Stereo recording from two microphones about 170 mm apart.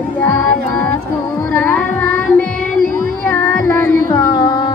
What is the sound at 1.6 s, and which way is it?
Music, 15° left (ahead or behind).